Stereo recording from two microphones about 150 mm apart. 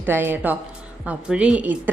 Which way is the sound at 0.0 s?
15° right (ahead or behind).